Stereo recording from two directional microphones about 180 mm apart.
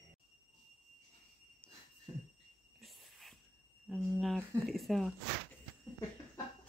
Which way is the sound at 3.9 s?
Centre (ahead or behind).